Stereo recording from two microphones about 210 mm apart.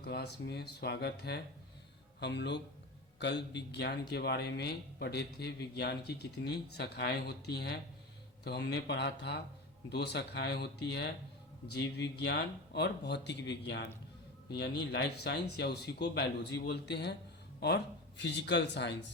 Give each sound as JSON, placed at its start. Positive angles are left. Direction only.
{"t": 0.0, "sound": "speech", "side_deg": 50}
{"t": 18.2, "sound": "speech", "side_deg": 55}